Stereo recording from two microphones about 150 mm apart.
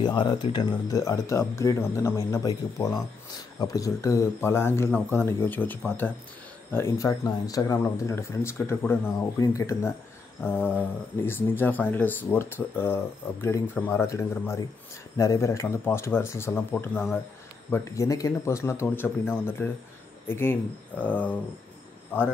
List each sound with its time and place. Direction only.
0.0 s speech: 30° left (ahead or behind); by 22.3 s 15° left (ahead or behind)